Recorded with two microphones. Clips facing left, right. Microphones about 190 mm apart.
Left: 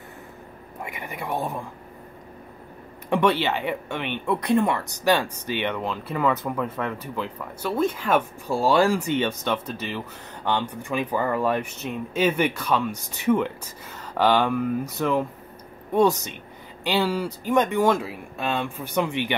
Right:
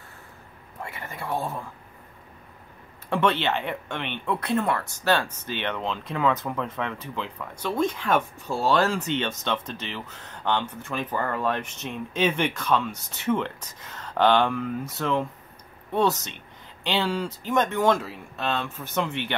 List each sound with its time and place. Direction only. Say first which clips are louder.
0.8 s speech: left 2 dB; 15° left (ahead or behind)
3.1 s speech: left 2 dB; 10° left (ahead or behind)